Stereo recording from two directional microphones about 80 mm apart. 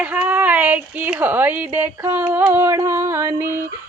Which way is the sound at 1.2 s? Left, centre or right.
Right.